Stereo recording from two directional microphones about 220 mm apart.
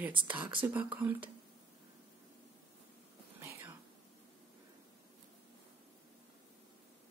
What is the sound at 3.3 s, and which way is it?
Whispering, 10° right (ahead or behind).